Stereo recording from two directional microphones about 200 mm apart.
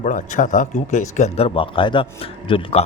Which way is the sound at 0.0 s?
40° left (ahead or behind).